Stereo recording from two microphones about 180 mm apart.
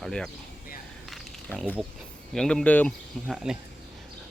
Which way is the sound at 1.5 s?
5° left (ahead or behind).